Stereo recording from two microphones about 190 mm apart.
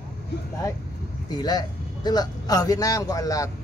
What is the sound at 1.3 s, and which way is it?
A man's voice, 20° left (ahead or behind).